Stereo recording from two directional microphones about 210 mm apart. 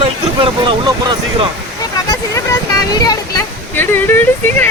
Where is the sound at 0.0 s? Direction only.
25° right (ahead or behind).